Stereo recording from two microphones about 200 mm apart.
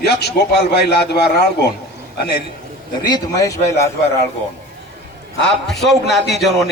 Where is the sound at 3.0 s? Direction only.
20° left (ahead or behind).